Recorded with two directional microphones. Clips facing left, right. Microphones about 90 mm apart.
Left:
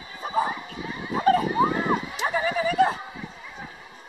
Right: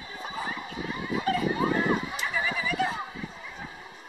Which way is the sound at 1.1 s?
40° left (ahead or behind).